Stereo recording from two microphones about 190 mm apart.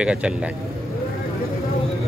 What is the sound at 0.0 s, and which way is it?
Speech, 5° right (ahead or behind).